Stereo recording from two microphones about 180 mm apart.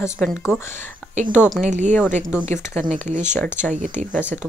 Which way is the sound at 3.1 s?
40° right (ahead or behind).